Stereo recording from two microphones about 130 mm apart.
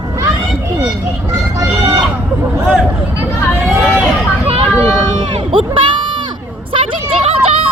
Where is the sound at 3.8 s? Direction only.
5° left (ahead or behind).